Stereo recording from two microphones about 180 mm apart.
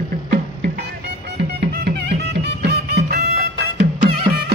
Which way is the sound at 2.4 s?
65° right (ahead or behind).